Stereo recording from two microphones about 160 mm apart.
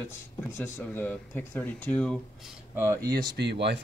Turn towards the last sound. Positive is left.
turn(degrees=-90)